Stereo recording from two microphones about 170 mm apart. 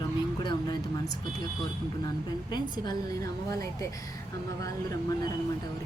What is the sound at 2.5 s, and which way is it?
Speech, 25° left (ahead or behind).